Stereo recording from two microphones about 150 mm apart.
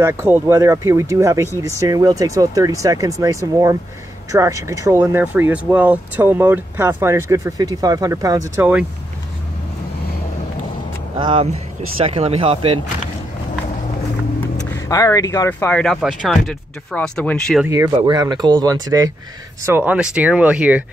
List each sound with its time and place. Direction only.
0.0 s speech: 15° right (ahead or behind)
11.1 s speech: 30° right (ahead or behind)
14.9 s speech: 25° left (ahead or behind)
15.7 s speech: 5° left (ahead or behind)
17.6 s speech: 20° right (ahead or behind)
19.6 s speech: 15° right (ahead or behind)